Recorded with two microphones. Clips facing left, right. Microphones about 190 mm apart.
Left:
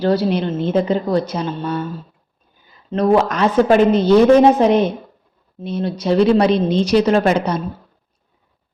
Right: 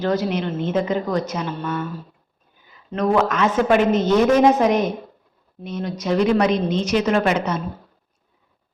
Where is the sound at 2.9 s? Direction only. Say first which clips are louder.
Left 4 dB; 35° left (ahead or behind).